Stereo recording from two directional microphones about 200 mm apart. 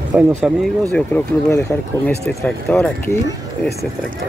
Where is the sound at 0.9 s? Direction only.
10° left (ahead or behind).